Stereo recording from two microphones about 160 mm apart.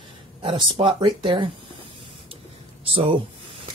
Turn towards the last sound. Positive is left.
turn(degrees=-35)  # may be behind; listen again after turning